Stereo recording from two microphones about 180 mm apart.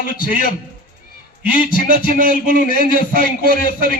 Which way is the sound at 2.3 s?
50° left (ahead or behind).